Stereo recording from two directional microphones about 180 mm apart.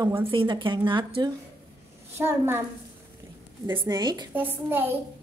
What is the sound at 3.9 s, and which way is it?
Speech, 25° right (ahead or behind).